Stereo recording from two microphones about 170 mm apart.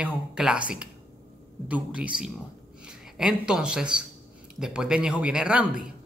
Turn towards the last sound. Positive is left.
turn(degrees=-5)  # may be behind; listen again after turning